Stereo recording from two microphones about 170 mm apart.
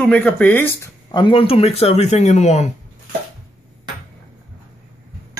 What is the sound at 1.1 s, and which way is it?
Speech, 30° left (ahead or behind).